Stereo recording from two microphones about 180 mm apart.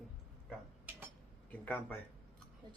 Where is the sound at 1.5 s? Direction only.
10° left (ahead or behind).